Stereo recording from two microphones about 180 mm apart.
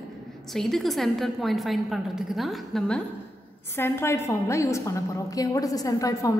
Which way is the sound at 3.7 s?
15° left (ahead or behind).